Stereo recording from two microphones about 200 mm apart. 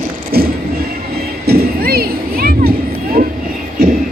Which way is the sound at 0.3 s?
50° right (ahead or behind).